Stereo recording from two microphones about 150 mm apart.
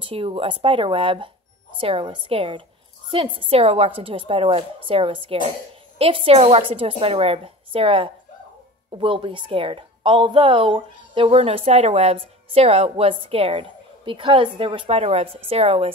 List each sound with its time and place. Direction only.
0.0 s a woman's voice: 35° right (ahead or behind)